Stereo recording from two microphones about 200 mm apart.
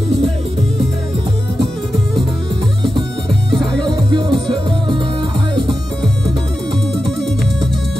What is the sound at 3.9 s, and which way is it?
Music, 25° right (ahead or behind).